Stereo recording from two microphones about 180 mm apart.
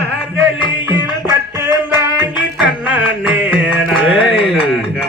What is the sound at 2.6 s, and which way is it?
Music, 5° right (ahead or behind).